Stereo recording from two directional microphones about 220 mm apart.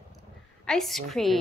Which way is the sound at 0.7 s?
Centre (ahead or behind).